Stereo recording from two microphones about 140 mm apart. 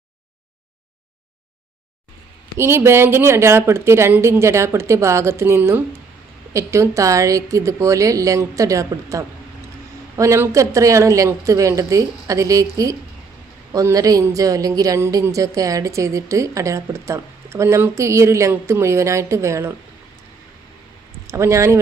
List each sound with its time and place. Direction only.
2.6 s a woman's voice: 15° right (ahead or behind)
21.2 s a woman's voice: 20° right (ahead or behind)